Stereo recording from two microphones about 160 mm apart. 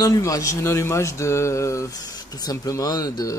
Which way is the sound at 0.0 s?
20° left (ahead or behind).